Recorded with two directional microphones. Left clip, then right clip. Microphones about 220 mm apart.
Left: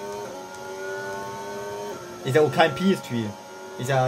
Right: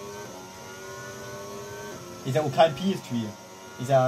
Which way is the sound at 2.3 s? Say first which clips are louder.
Left 2 dB; 40° left (ahead or behind).